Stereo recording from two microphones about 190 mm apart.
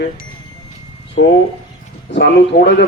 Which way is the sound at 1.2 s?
50° left (ahead or behind).